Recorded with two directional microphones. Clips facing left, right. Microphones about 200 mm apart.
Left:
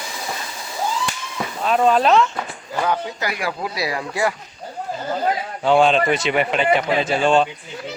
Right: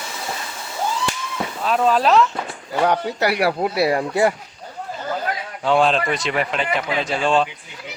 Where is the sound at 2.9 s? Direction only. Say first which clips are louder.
Right 4 dB; 70° right (ahead or behind); by 4.3 s 50° right (ahead or behind).